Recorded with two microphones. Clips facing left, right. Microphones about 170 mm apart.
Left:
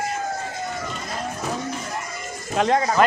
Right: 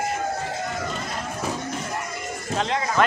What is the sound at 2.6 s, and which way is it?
Speech, 45° left (ahead or behind).